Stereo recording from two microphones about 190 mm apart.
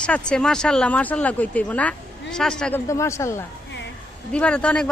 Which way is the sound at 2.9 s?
15° left (ahead or behind).